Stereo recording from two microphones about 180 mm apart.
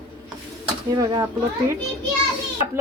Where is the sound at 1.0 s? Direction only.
20° right (ahead or behind).